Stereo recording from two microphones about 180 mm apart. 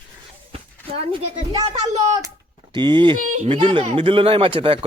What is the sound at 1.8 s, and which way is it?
Speech, 40° right (ahead or behind).